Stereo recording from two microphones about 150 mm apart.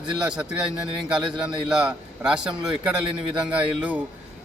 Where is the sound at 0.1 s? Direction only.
5° right (ahead or behind).